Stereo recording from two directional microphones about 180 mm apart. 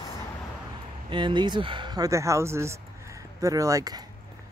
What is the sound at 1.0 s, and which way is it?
Speech, 25° right (ahead or behind).